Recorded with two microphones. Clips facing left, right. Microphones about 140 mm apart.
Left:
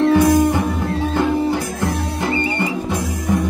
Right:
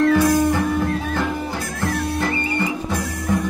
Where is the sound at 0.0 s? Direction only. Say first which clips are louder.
Left 3 dB; 20° left (ahead or behind).